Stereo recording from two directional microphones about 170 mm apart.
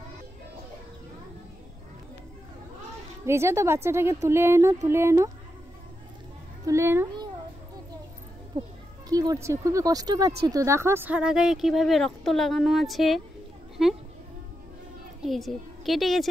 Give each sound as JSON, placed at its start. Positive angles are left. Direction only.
{"t": 3.3, "sound": "speech", "side_deg": -15}
{"t": 6.6, "sound": "a woman's voice", "side_deg": -15}
{"t": 8.5, "sound": "a child's voice", "side_deg": -40}
{"t": 9.1, "sound": "speech", "side_deg": -20}
{"t": 15.2, "sound": "a woman's voice", "side_deg": 0}